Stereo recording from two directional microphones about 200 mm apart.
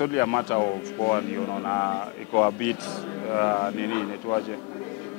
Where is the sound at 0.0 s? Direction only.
20° left (ahead or behind).